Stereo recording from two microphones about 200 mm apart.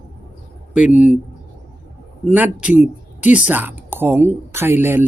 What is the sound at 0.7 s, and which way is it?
Speech, 5° right (ahead or behind).